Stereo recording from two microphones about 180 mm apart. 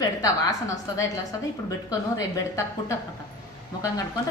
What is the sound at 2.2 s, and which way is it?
Speech, 20° left (ahead or behind).